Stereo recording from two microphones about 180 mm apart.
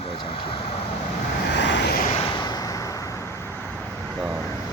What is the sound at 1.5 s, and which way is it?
Vehicle, 75° left (ahead or behind).